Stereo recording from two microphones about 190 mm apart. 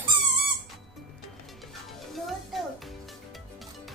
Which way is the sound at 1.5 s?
Centre (ahead or behind).